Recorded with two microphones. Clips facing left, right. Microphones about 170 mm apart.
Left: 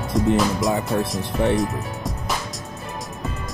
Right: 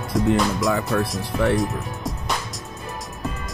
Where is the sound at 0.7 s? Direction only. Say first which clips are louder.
Even; 20° left (ahead or behind).